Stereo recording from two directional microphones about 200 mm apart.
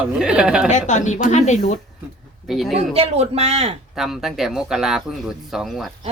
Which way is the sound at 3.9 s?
Centre (ahead or behind).